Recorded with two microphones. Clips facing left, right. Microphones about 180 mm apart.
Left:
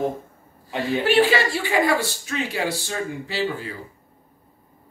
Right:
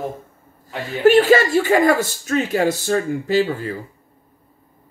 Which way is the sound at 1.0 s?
45° right (ahead or behind).